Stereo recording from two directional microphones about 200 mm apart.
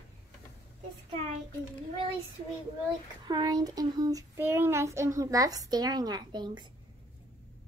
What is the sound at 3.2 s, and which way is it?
Child singing, 20° right (ahead or behind).